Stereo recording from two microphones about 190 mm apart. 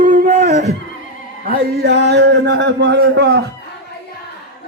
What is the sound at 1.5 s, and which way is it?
A man's voice, 60° right (ahead or behind).